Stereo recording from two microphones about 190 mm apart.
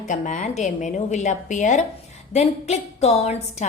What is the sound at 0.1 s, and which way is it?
A woman's voice, 40° left (ahead or behind).